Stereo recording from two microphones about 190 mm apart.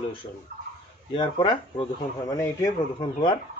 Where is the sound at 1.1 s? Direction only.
25° left (ahead or behind).